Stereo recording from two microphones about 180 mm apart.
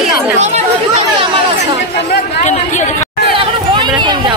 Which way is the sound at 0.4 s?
40° right (ahead or behind).